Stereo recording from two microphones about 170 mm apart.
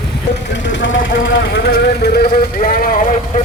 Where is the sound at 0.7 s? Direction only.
90° left.